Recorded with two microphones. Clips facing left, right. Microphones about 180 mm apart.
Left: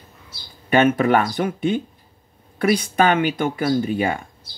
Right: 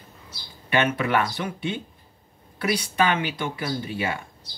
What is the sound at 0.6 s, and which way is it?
Speech, 45° left (ahead or behind).